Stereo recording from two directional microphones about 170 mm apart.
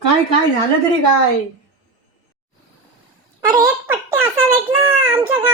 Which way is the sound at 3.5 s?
15° right (ahead or behind).